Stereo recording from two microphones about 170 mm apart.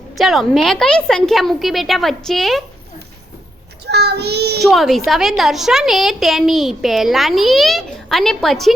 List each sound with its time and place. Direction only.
0.2 s a woman's voice: centre (ahead or behind)
3.8 s child singing: 75° right (ahead or behind)
4.6 s a woman's voice: centre (ahead or behind)